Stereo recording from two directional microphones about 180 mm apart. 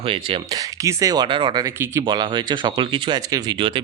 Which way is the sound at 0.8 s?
15° right (ahead or behind).